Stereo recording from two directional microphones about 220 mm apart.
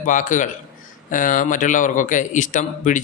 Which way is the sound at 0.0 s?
35° left (ahead or behind).